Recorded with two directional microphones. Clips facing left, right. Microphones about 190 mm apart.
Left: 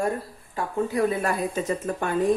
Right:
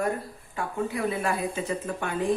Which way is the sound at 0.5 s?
40° left (ahead or behind).